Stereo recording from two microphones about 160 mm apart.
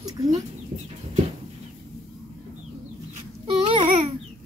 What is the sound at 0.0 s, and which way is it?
Chicken, 20° right (ahead or behind).